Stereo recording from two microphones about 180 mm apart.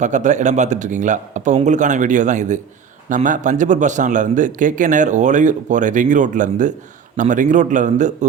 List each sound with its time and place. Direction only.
0.0 s speech: 40° right (ahead or behind)